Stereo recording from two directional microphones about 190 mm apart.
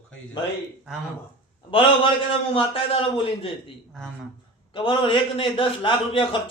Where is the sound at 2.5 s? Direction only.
30° left (ahead or behind).